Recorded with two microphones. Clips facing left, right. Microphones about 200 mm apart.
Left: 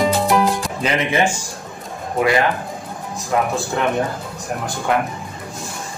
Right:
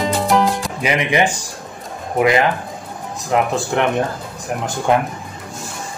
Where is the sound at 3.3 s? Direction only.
20° right (ahead or behind).